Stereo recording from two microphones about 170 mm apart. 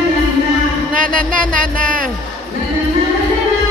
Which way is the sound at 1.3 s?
55° right (ahead or behind).